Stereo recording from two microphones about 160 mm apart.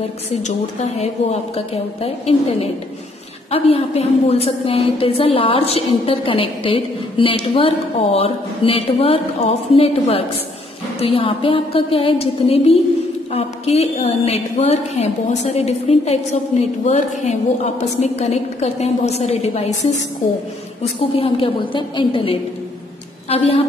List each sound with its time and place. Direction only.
0.9 s a woman's voice: 40° left (ahead or behind)
21.2 s a woman's voice: 35° left (ahead or behind)